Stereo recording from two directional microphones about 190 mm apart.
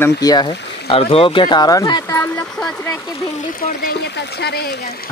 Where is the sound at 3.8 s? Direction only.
60° left (ahead or behind).